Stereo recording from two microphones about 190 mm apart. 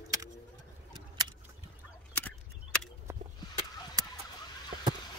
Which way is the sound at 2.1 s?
10° left (ahead or behind).